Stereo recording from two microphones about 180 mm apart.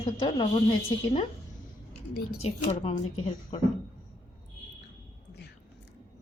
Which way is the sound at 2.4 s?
35° left (ahead or behind).